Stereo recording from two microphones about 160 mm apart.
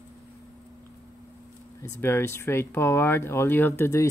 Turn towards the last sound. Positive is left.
turn(degrees=15)  # may be behind; listen again after turning